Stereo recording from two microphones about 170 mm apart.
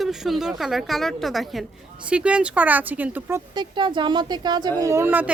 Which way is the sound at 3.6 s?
30° right (ahead or behind).